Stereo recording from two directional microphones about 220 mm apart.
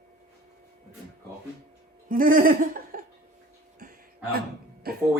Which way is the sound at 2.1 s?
40° right (ahead or behind).